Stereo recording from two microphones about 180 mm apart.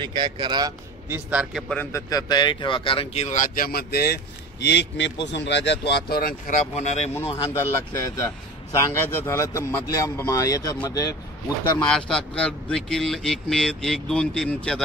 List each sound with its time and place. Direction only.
0.0 s a man's voice: 25° right (ahead or behind); by 1.8 s 5° right (ahead or behind)
1.8 s speech: 15° left (ahead or behind); by 6.5 s 55° left (ahead or behind)
6.7 s speech: 40° left (ahead or behind)
7.2 s a man's voice: 30° left (ahead or behind)
11.9 s a man's voice: 5° left (ahead or behind)